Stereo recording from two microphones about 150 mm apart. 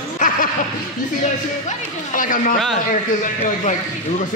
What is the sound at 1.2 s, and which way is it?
A man's voice, 60° left (ahead or behind).